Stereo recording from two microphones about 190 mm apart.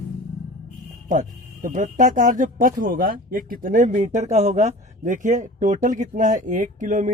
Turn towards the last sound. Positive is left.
turn(degrees=-40)  # may be behind; listen again after turning